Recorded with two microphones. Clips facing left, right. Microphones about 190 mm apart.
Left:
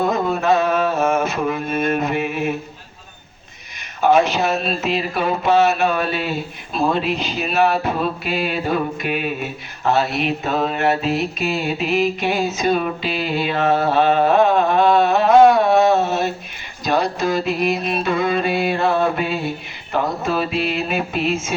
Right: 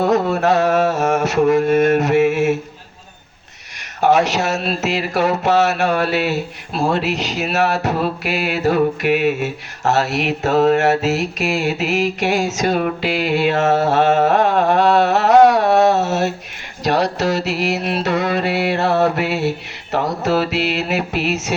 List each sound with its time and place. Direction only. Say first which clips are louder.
0.0 s music: right 3 dB; 75° right (ahead or behind)
4.0 s speech: even; 80° right
16.8 s music: right 2 dB; 75° right (ahead or behind)